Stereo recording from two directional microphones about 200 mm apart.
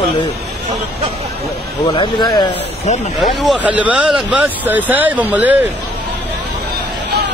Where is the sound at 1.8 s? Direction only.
20° left (ahead or behind).